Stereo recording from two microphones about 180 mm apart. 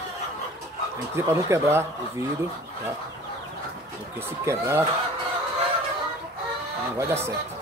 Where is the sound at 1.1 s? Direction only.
15° right (ahead or behind).